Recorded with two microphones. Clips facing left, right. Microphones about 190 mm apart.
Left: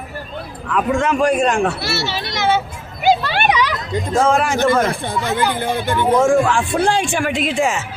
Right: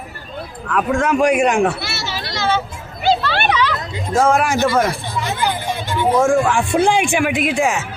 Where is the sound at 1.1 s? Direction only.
15° right (ahead or behind).